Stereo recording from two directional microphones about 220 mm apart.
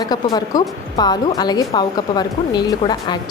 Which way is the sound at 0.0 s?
15° left (ahead or behind).